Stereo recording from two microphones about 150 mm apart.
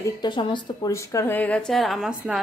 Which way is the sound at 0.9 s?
20° left (ahead or behind).